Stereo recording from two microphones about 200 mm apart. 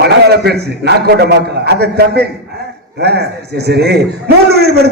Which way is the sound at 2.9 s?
55° right (ahead or behind).